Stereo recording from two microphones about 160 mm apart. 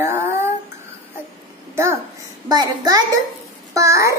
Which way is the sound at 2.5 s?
25° right (ahead or behind).